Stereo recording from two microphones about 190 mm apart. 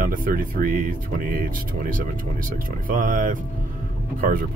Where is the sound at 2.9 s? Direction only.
45° right (ahead or behind).